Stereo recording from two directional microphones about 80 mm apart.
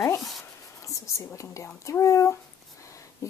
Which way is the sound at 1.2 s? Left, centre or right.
Left.